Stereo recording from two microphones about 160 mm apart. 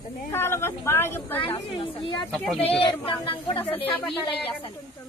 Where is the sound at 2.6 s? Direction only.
35° left (ahead or behind).